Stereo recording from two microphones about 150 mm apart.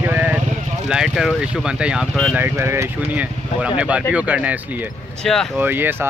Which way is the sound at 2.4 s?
15° right (ahead or behind).